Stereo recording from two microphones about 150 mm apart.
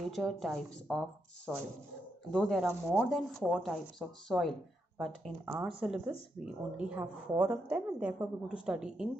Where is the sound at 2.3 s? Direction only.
Centre (ahead or behind).